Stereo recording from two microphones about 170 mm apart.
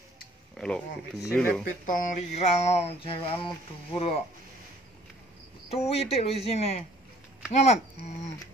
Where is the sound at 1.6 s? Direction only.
50° left (ahead or behind); by 3.5 s 30° left (ahead or behind).